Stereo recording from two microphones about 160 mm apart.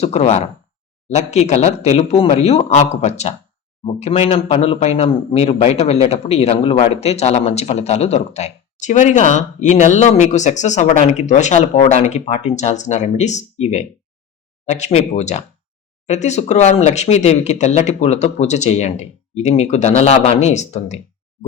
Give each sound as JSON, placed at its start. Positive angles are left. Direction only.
{"t": 0.0, "sound": "a man's voice", "side_deg": 40}